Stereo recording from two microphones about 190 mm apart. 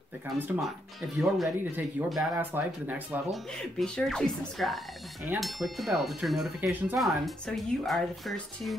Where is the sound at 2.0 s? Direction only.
5° right (ahead or behind).